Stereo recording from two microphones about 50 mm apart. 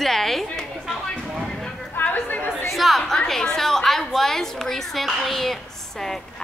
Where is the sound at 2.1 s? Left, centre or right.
Left.